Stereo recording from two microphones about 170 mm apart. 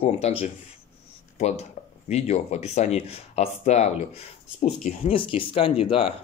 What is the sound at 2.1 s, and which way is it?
Speech, 40° left (ahead or behind).